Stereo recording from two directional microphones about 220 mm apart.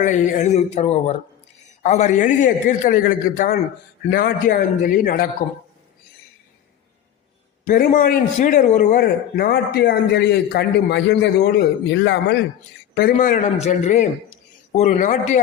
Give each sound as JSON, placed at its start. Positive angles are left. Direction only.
{"t": 0.0, "sound": "a man's voice", "side_deg": 35}
{"t": 7.6, "sound": "a man's voice", "side_deg": 40}
{"t": 12.9, "sound": "a man's voice", "side_deg": 40}